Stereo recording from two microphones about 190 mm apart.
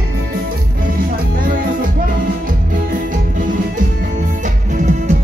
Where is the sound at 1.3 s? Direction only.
45° right (ahead or behind).